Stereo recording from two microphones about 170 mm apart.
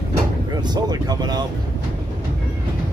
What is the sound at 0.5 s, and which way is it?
Speech, 25° right (ahead or behind).